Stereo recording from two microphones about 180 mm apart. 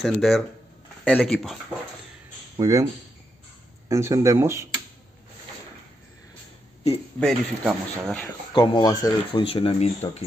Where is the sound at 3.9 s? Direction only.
15° right (ahead or behind).